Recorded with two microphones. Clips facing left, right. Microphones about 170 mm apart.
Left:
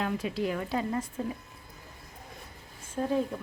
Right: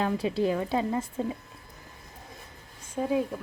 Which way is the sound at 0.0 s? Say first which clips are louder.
Right 4 dB; 30° right (ahead or behind).